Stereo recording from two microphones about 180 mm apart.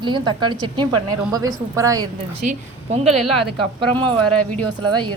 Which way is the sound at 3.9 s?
10° left (ahead or behind).